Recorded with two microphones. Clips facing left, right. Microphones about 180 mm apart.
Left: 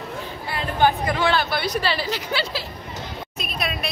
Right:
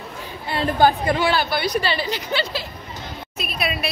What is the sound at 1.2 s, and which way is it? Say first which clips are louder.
A woman's voice: left 2 dB; 5° right (ahead or behind).